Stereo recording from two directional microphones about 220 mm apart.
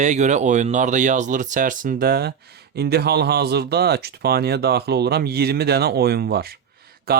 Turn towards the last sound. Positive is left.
turn(degrees=-45)  # may be behind; listen again after turning